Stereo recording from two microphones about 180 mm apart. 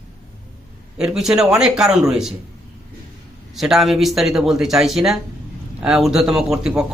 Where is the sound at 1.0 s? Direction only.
5° right (ahead or behind).